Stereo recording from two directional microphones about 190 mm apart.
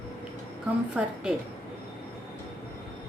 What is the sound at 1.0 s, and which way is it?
Speech, 10° right (ahead or behind).